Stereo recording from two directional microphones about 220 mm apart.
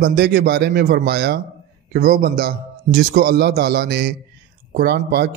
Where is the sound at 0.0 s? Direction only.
45° right (ahead or behind).